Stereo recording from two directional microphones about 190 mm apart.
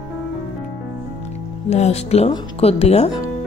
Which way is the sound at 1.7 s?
35° left (ahead or behind).